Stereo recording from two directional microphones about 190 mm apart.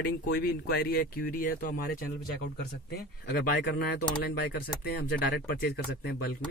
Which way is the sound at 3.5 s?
50° left (ahead or behind).